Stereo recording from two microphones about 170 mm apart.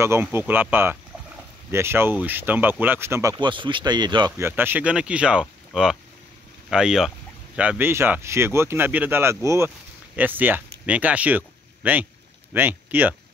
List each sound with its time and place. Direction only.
0.0 s speech: 15° right (ahead or behind)
4.4 s speech: 10° right (ahead or behind)